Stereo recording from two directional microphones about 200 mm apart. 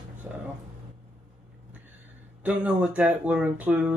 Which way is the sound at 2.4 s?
5° right (ahead or behind).